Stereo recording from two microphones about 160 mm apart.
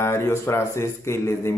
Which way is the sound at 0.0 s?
15° left (ahead or behind).